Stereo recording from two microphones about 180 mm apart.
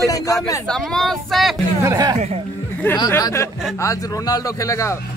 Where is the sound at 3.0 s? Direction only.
20° left (ahead or behind).